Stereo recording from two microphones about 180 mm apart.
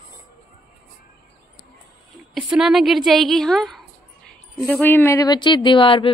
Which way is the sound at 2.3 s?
5° right (ahead or behind).